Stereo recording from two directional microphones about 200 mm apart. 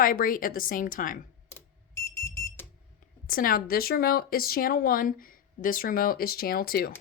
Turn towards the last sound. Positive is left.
turn(degrees=50)  # may be behind; listen again after turning